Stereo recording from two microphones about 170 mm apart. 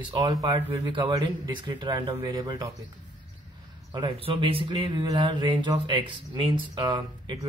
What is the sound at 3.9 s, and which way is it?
Speech, 25° right (ahead or behind).